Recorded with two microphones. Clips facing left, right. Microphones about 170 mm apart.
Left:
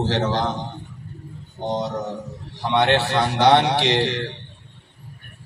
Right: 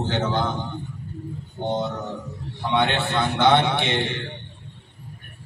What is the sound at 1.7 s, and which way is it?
A man's voice, 40° left (ahead or behind).